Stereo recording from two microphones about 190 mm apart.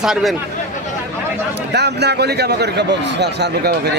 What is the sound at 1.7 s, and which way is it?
A man's voice, 60° right (ahead or behind).